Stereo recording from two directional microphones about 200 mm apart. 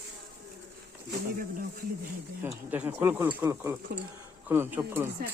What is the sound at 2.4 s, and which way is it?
Speech, 10° right (ahead or behind).